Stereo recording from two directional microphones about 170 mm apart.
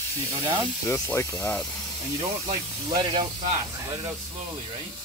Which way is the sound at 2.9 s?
30° right (ahead or behind).